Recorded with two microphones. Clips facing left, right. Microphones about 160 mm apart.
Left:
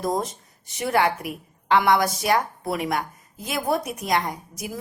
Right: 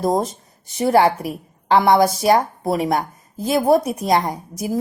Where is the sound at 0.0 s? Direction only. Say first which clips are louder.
Right 6 dB; 35° right (ahead or behind).